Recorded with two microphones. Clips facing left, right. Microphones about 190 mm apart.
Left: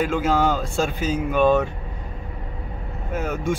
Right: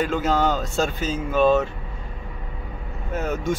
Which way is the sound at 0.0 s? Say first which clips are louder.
Left 1 dB; 10° left (ahead or behind).